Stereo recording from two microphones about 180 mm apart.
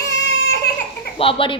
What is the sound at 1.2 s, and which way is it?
Speech, 30° left (ahead or behind).